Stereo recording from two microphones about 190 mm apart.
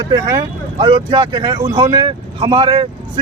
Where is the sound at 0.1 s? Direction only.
20° right (ahead or behind).